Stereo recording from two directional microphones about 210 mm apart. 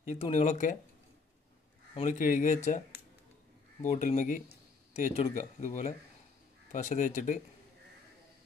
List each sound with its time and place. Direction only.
0.0 s speech: 30° left (ahead or behind)
2.0 s speech: 35° left (ahead or behind)
3.8 s speech: 35° left (ahead or behind)